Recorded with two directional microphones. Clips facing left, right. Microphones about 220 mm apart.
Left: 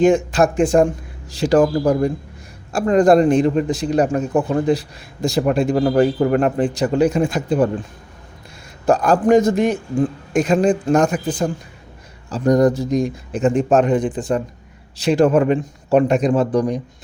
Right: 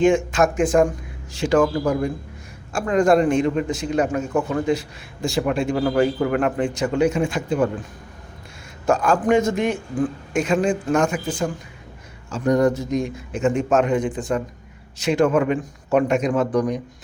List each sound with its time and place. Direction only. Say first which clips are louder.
0.3 s a man's voice: left 3 dB; 35° left (ahead or behind)
8.9 s a man's voice: left 4 dB; 35° left (ahead or behind)
9.7 s speech: left 4 dB; 20° left (ahead or behind)
10.3 s a man's voice: left 5 dB; 35° left (ahead or behind)